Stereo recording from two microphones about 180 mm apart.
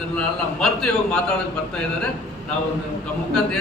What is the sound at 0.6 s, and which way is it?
Speech, 5° left (ahead or behind).